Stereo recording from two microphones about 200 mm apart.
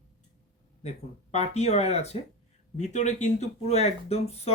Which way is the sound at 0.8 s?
35° left (ahead or behind).